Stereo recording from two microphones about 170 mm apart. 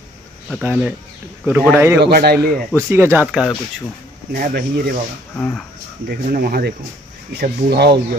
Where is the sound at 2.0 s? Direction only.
65° right (ahead or behind).